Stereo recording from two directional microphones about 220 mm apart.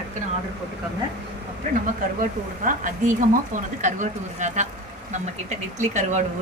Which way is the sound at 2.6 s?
35° right (ahead or behind).